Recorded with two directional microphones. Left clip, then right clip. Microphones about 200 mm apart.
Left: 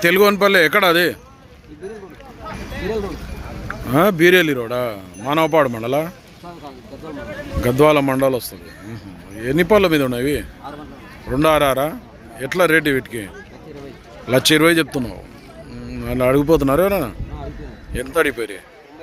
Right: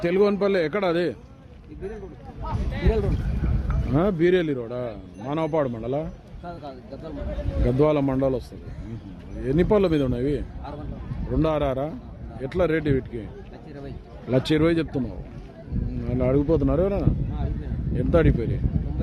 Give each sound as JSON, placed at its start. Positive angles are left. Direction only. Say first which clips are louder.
{"t": 0.0, "sound": "speech", "louder": "left 8 dB", "side_deg": 10}
{"t": 3.9, "sound": "speech", "louder": "left 8 dB", "side_deg": 15}
{"t": 7.6, "sound": "speech", "louder": "left 8 dB", "side_deg": 10}
{"t": 14.3, "sound": "speech", "louder": "left 8 dB", "side_deg": 0}